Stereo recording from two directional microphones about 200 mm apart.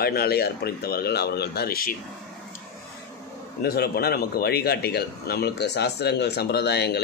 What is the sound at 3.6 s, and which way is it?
Speech, 50° left (ahead or behind).